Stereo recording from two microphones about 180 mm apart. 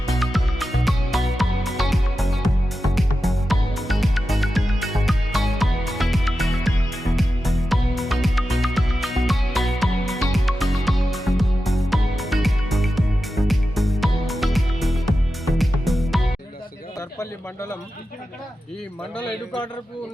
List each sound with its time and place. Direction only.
0.1 s music: centre (ahead or behind)